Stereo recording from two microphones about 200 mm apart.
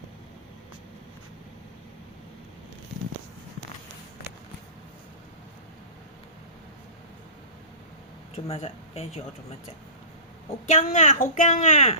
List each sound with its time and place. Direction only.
8.6 s a woman's voice: 30° left (ahead or behind)
10.7 s a woman's voice: 35° left (ahead or behind)